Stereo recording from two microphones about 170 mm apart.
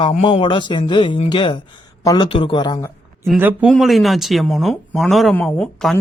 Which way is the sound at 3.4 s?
10° right (ahead or behind).